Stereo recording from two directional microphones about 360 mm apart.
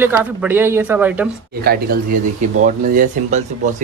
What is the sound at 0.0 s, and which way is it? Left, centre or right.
Speech, centre.